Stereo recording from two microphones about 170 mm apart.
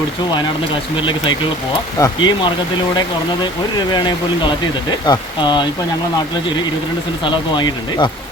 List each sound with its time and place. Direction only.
2.0 s speech: 25° left (ahead or behind)
3.9 s speech: 25° left (ahead or behind)
7.3 s speech: 30° left (ahead or behind)